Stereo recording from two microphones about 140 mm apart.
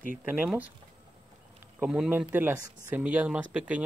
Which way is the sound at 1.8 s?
5° right (ahead or behind).